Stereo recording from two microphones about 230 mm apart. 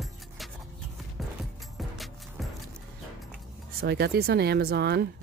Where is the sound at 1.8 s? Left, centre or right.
Centre.